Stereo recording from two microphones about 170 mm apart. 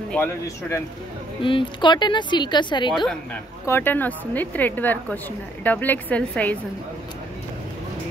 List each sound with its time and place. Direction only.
0.1 s a woman's voice: 15° left (ahead or behind)
1.4 s a woman's voice: 30° left (ahead or behind)
3.6 s a woman's voice: 15° left (ahead or behind)